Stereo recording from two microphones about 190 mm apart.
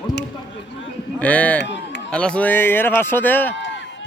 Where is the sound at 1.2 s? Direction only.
5° left (ahead or behind).